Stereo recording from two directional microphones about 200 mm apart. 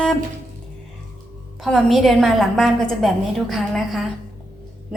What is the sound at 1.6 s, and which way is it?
A woman's voice, centre (ahead or behind).